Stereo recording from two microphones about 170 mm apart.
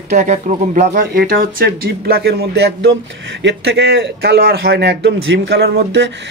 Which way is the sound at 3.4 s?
85° right.